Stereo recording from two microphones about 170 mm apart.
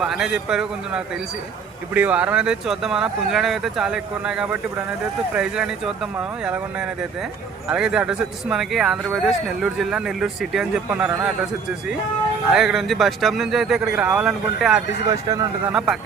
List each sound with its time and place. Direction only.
0.0 s speech: 5° right (ahead or behind)
12.5 s speech: centre (ahead or behind)
15.1 s speech: 20° right (ahead or behind)